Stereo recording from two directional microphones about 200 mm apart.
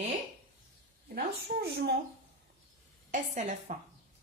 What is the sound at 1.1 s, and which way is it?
Speech, 50° right (ahead or behind).